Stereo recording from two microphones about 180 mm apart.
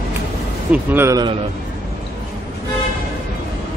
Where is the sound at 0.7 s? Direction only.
15° right (ahead or behind).